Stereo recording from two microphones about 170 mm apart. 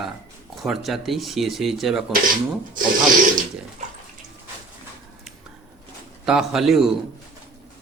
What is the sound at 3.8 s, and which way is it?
Bathtub, 45° right (ahead or behind).